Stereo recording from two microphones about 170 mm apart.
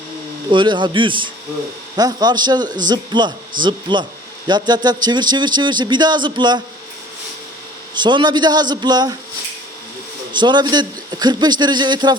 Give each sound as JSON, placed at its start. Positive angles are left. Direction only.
{"t": 0.5, "sound": "a man's voice", "side_deg": -30}
{"t": 7.9, "sound": "a man's voice", "side_deg": -25}
{"t": 10.3, "sound": "a man's voice", "side_deg": -25}